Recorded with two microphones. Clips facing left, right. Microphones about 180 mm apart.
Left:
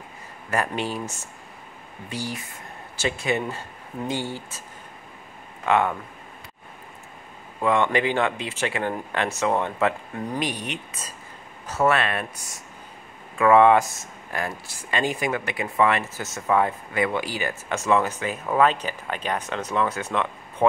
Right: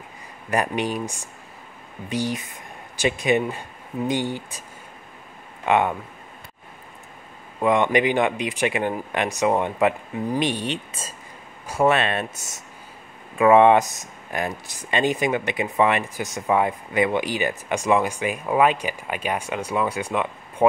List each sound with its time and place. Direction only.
0.5 s speech: 15° right (ahead or behind)
5.7 s speech: 20° right (ahead or behind)
7.6 s speech: 15° right (ahead or behind)
10.4 s speech: 30° right (ahead or behind)
11.6 s speech: 15° right (ahead or behind)